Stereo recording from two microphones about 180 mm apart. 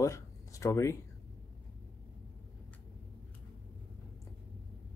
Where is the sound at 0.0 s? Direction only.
15° left (ahead or behind).